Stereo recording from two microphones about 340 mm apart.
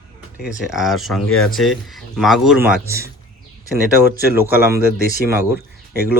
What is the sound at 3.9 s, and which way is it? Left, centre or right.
Speech, right.